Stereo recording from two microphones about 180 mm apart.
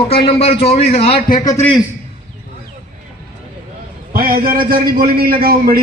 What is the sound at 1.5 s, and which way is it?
Speech, 15° left (ahead or behind).